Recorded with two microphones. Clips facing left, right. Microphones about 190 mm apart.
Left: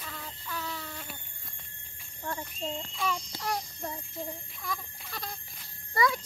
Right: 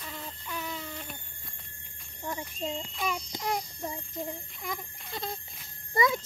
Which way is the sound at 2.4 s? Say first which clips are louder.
Right 2 dB; 10° right (ahead or behind).